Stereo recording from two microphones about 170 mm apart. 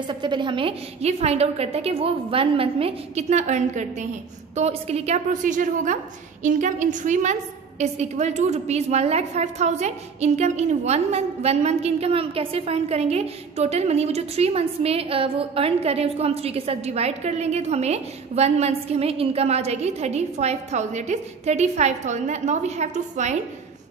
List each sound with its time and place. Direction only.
0.0 s a woman's voice: 25° right (ahead or behind)